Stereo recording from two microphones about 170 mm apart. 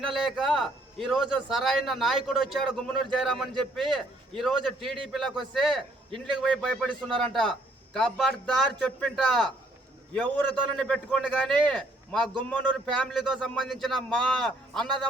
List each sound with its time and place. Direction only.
0.0 s a man's voice: centre (ahead or behind)